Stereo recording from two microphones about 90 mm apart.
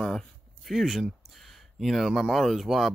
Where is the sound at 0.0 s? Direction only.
5° left (ahead or behind).